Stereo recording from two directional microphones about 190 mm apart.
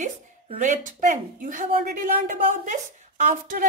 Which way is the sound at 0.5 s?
40° right (ahead or behind).